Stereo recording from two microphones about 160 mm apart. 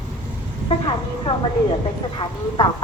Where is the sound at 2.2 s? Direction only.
30° left (ahead or behind).